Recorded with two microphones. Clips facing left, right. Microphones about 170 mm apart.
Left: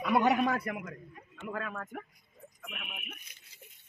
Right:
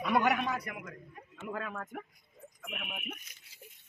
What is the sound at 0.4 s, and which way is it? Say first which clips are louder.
Speech: left 5 dB; 50° left (ahead or behind).